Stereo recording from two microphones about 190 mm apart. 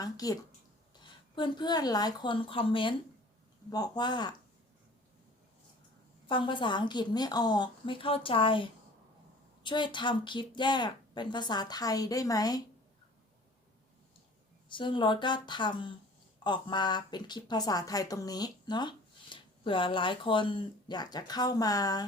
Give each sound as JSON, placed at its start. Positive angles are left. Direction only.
{"t": 0.0, "sound": "speech", "side_deg": 20}
{"t": 1.4, "sound": "speech", "side_deg": 20}
{"t": 6.2, "sound": "speech", "side_deg": 25}
{"t": 9.6, "sound": "speech", "side_deg": 25}
{"t": 14.7, "sound": "speech", "side_deg": 25}